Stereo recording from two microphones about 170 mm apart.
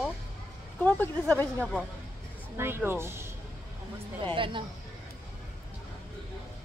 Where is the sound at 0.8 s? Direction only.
10° left (ahead or behind).